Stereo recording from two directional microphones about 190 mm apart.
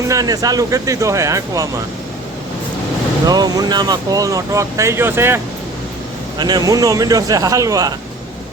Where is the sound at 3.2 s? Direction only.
20° right (ahead or behind).